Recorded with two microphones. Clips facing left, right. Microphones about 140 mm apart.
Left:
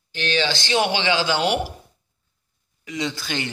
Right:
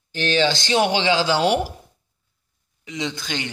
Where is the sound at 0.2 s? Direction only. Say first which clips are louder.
Right 3 dB; 45° right (ahead or behind).